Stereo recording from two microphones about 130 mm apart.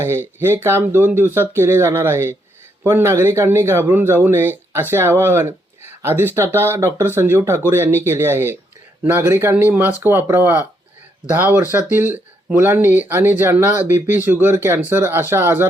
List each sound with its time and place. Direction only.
0.0 s speech: 20° right (ahead or behind)